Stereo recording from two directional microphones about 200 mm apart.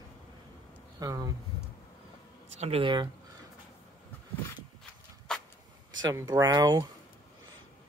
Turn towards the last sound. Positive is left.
turn(degrees=-20)  # may be behind; listen again after turning